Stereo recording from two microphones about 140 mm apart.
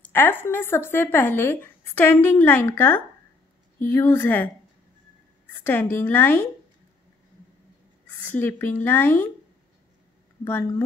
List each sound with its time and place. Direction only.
0.1 s speech: 15° left (ahead or behind)
5.5 s speech: 15° left (ahead or behind)
8.2 s speech: 15° left (ahead or behind)
10.4 s speech: 15° left (ahead or behind)